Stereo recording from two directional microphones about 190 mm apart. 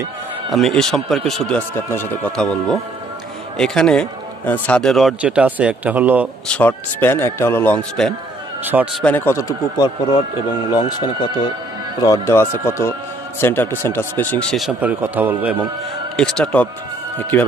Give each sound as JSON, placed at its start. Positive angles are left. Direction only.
{"t": 0.5, "sound": "a man's voice", "side_deg": 0}
{"t": 6.4, "sound": "a man's voice", "side_deg": 5}
{"t": 16.2, "sound": "a man's voice", "side_deg": 5}